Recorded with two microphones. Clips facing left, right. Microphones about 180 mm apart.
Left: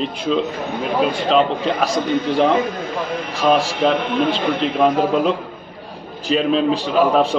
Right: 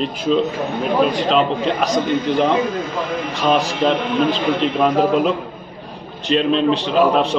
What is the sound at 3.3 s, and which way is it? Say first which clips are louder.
Speech: left 2 dB; centre (ahead or behind).